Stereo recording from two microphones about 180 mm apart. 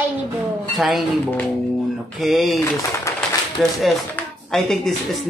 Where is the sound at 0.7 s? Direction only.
Centre (ahead or behind).